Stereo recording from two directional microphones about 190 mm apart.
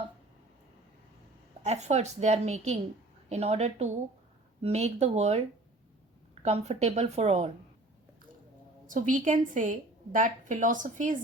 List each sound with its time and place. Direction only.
1.6 s a woman's voice: 35° right (ahead or behind)
6.4 s a woman's voice: 35° right (ahead or behind)
8.9 s a woman's voice: 45° right (ahead or behind)